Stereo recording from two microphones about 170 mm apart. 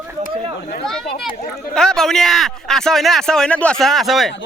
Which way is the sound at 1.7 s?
5° left (ahead or behind).